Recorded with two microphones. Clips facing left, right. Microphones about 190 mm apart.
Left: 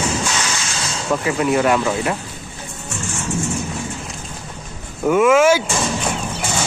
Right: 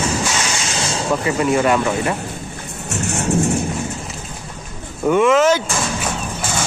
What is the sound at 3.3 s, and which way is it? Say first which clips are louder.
Thunder: right 6 dB; 60° right (ahead or behind).